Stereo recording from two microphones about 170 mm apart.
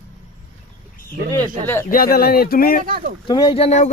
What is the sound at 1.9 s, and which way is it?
Speech, 60° left (ahead or behind).